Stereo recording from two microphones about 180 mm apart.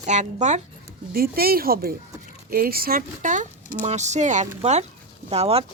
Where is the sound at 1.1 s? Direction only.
55° right (ahead or behind); by 5.6 s 35° right (ahead or behind).